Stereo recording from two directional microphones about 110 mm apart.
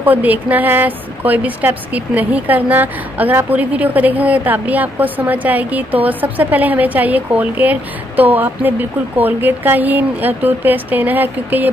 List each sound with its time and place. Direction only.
0.0 s a woman's voice: 15° right (ahead or behind)